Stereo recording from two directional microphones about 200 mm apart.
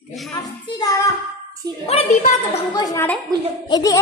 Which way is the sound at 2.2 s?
35° left (ahead or behind).